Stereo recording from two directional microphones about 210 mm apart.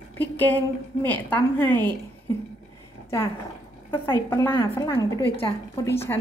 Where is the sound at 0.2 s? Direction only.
10° left (ahead or behind).